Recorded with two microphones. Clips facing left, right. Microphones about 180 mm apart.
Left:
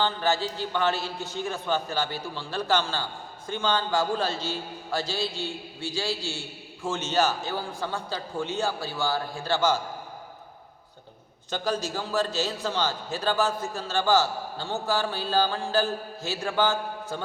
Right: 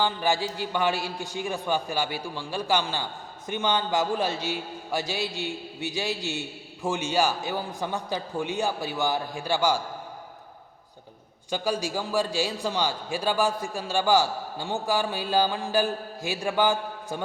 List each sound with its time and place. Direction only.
0.0 s a man's voice: 15° right (ahead or behind)
11.5 s a man's voice: 10° right (ahead or behind)